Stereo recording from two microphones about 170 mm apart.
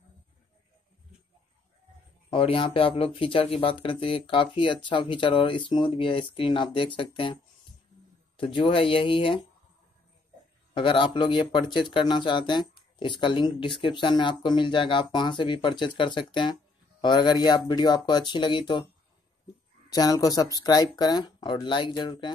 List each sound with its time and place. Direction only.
2.2 s speech: 30° left (ahead or behind)
8.4 s speech: 30° left (ahead or behind)
10.7 s speech: 30° left (ahead or behind)
19.9 s speech: 20° left (ahead or behind)